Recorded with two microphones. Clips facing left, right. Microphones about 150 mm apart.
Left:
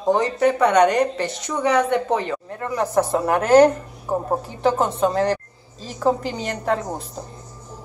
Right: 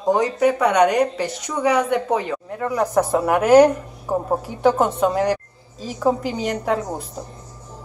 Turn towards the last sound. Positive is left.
turn(degrees=-10)  # may be behind; listen again after turning